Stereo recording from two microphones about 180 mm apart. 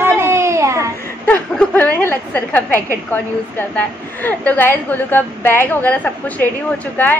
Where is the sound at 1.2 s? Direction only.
10° left (ahead or behind).